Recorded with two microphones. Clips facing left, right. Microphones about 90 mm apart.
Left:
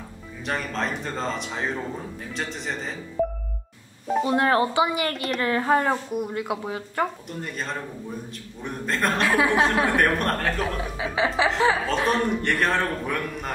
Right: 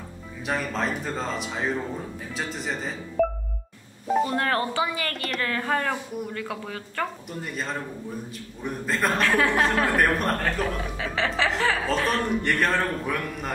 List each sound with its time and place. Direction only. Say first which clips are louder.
0.5 s a woman's voice: right 1 dB; centre (ahead or behind)
4.3 s a woman's voice: left 4 dB; 15° left (ahead or behind)
7.2 s a woman's voice: even; 5° right (ahead or behind)
11.0 s chuckle: left 3 dB; 10° left (ahead or behind)
11.9 s a woman's voice: left 1 dB; centre (ahead or behind)